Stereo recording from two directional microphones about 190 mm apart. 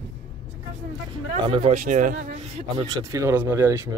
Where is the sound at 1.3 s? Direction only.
35° right (ahead or behind).